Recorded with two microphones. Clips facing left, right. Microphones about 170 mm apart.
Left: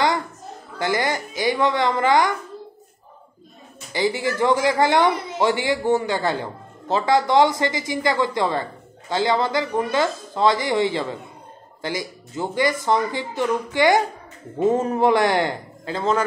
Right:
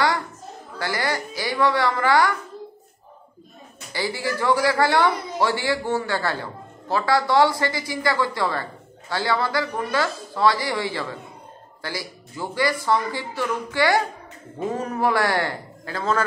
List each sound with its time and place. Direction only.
0.7 s a man's voice: 20° left (ahead or behind)
3.9 s a man's voice: 20° left (ahead or behind)